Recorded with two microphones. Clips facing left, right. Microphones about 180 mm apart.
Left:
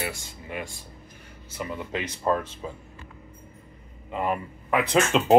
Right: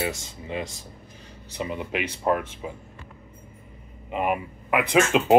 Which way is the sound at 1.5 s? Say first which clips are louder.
Right 2 dB; 20° right (ahead or behind).